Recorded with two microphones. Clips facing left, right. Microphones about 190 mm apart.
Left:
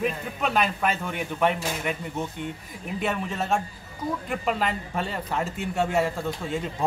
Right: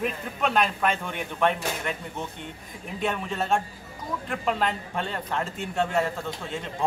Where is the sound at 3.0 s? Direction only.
Centre (ahead or behind).